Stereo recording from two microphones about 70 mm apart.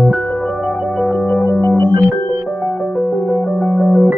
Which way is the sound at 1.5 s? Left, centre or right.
Left.